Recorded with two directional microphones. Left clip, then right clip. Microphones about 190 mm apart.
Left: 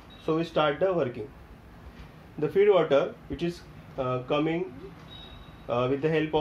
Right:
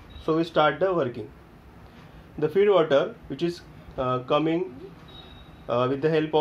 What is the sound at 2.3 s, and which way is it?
Speech, 25° right (ahead or behind).